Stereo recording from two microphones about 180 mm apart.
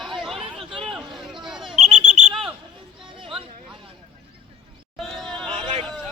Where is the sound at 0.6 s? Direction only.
30° right (ahead or behind).